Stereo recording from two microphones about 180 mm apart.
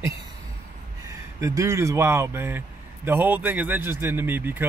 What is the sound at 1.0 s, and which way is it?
A man's voice, 20° right (ahead or behind).